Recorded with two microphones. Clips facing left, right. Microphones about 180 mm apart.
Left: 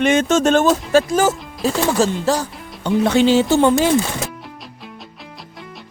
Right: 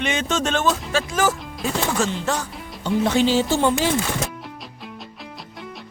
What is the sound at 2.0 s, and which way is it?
Speech, 35° left (ahead or behind).